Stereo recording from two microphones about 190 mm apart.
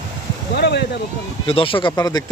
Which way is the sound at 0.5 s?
60° left (ahead or behind).